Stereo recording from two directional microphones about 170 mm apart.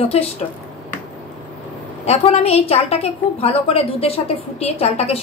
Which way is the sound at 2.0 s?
35° left (ahead or behind).